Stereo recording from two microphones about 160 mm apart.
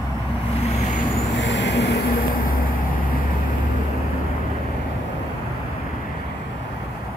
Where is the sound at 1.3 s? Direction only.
90° left; by 2.7 s 60° left (ahead or behind).